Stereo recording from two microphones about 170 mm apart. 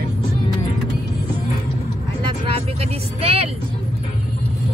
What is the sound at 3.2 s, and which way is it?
Speech, 35° right (ahead or behind).